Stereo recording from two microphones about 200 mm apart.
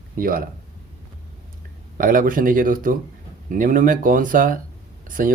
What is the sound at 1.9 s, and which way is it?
Speech, 45° right (ahead or behind).